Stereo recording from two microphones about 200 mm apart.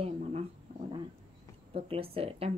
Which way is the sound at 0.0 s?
30° right (ahead or behind).